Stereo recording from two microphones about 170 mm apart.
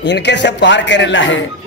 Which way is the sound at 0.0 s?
90° left.